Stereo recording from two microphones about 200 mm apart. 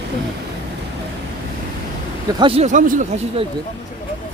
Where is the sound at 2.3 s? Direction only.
25° right (ahead or behind).